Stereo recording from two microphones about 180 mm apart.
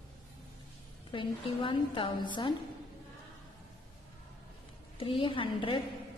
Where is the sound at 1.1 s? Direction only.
25° left (ahead or behind).